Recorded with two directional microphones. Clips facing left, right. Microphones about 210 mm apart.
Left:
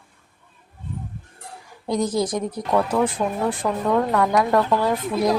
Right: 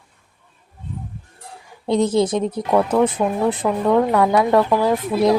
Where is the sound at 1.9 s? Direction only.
25° right (ahead or behind).